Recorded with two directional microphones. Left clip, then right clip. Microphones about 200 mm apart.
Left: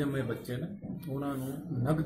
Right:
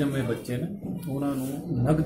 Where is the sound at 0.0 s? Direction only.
5° left (ahead or behind).